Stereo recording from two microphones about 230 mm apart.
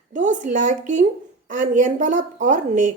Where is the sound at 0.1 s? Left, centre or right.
Right.